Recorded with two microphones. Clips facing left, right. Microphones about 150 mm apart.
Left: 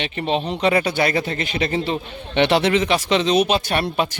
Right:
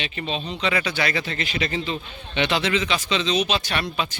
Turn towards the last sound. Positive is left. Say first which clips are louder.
# left 6 dB
turn(degrees=50)  # may be behind; listen again after turning